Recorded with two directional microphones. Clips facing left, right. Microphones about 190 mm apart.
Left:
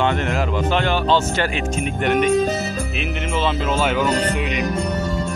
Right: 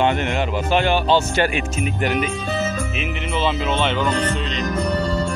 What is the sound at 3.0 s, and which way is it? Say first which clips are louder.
Speech: left 1 dB; centre (ahead or behind).